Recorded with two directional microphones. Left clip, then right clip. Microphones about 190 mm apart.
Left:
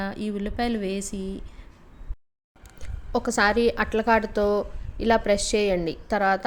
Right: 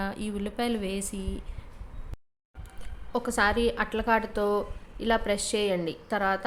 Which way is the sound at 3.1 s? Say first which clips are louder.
Left 4 dB; 20° left (ahead or behind).